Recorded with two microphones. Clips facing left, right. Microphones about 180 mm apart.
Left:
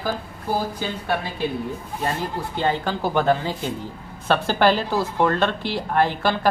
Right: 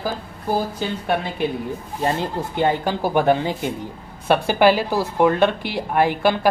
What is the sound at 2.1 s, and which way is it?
Speech, 15° right (ahead or behind).